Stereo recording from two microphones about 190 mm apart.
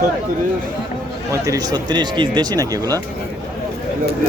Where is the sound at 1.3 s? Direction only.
20° right (ahead or behind).